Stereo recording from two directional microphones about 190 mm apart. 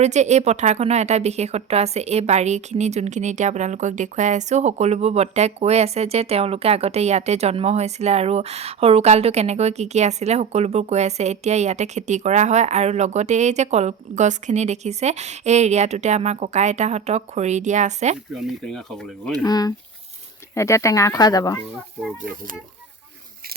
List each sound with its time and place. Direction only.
0.0 s speech: 35° right (ahead or behind)
18.4 s speech: centre (ahead or behind)
19.4 s speech: 20° left (ahead or behind)